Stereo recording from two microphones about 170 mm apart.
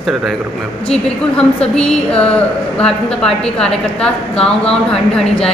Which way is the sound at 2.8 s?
5° left (ahead or behind).